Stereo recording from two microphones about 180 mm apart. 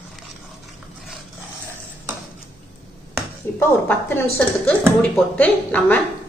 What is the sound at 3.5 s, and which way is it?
Speech, 10° left (ahead or behind).